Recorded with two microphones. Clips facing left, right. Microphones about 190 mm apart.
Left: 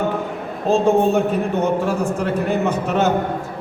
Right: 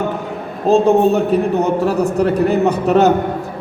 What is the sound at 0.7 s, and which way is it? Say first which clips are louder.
A man's voice: right 4 dB; 40° right (ahead or behind).